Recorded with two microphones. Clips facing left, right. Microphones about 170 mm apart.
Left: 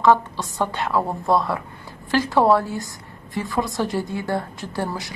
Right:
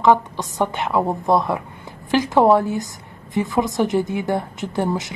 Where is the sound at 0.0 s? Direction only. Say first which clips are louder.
Right 1 dB; 20° right (ahead or behind).